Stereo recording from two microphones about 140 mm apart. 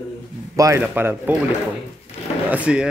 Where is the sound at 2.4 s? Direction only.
10° right (ahead or behind).